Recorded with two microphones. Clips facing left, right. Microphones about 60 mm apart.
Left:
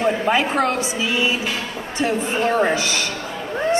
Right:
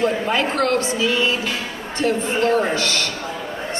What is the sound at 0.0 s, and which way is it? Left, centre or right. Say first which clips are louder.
A woman's voice: left 1 dB; centre.